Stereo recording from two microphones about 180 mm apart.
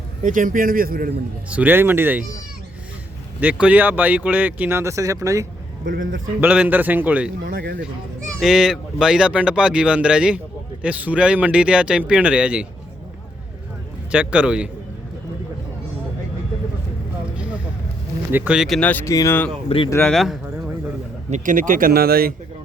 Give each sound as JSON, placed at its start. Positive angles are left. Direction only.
{"t": 0.2, "sound": "speech", "side_deg": -45}
{"t": 1.5, "sound": "speech", "side_deg": -10}
{"t": 3.4, "sound": "speech", "side_deg": -10}
{"t": 7.4, "sound": "speech", "side_deg": -55}
{"t": 8.4, "sound": "speech", "side_deg": 0}
{"t": 14.1, "sound": "speech", "side_deg": -5}
{"t": 18.3, "sound": "speech", "side_deg": -10}
{"t": 18.8, "sound": "speech", "side_deg": 10}
{"t": 19.6, "sound": "speech", "side_deg": 30}
{"t": 19.9, "sound": "speech", "side_deg": 10}
{"t": 21.2, "sound": "speech", "side_deg": -45}